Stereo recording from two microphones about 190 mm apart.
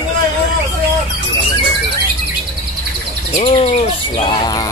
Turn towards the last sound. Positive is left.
turn(degrees=35)  # may be behind; listen again after turning